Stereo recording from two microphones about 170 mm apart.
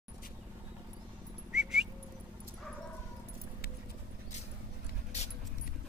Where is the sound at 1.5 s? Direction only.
5° right (ahead or behind).